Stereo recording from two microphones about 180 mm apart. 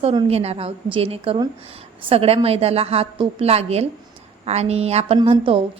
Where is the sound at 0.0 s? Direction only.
30° right (ahead or behind).